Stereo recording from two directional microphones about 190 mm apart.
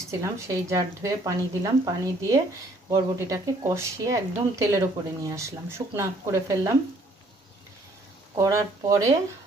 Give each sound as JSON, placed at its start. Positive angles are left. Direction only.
{"t": 0.1, "sound": "speech", "side_deg": -15}
{"t": 8.4, "sound": "speech", "side_deg": -15}